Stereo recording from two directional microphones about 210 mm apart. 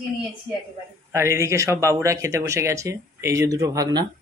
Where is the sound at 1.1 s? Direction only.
15° right (ahead or behind).